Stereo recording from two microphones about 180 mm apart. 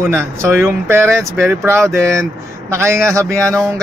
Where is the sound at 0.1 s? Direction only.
15° right (ahead or behind).